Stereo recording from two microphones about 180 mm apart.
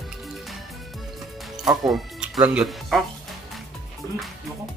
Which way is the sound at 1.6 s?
Centre (ahead or behind).